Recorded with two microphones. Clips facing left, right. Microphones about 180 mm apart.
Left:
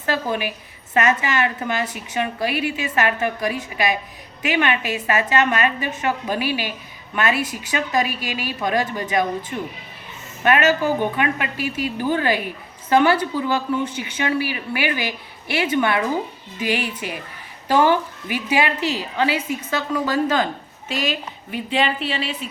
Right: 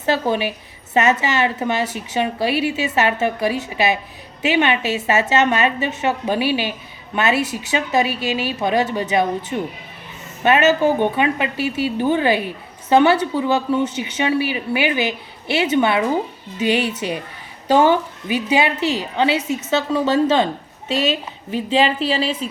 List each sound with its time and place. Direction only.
0.0 s a woman's voice: 25° right (ahead or behind)